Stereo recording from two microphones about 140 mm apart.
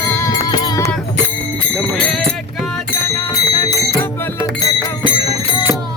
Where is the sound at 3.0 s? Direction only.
25° left (ahead or behind).